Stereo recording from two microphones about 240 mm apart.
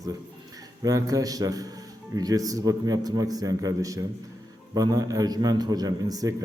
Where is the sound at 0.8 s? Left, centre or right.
Centre.